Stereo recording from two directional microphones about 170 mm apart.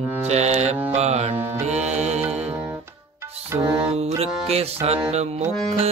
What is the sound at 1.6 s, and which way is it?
Music, 40° right (ahead or behind).